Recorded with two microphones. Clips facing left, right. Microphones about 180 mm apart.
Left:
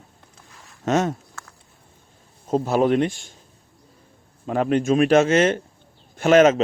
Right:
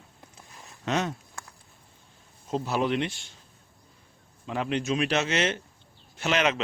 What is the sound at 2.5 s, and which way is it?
Speech, 50° left (ahead or behind).